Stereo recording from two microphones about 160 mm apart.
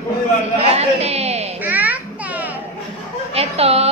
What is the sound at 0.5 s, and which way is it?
Speech, 40° right (ahead or behind).